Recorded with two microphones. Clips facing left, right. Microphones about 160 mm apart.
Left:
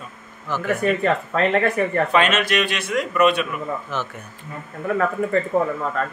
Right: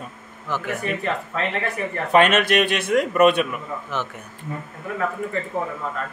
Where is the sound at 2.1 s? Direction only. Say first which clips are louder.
Right 2 dB; 55° right (ahead or behind).